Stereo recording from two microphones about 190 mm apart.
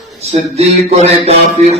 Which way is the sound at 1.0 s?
35° right (ahead or behind).